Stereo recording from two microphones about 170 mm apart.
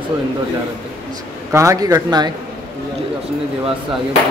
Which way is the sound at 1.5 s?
20° right (ahead or behind).